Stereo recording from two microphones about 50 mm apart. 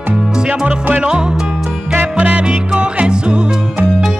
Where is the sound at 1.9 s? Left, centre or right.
Right.